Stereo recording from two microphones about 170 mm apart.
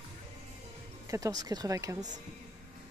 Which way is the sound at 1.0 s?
20° right (ahead or behind).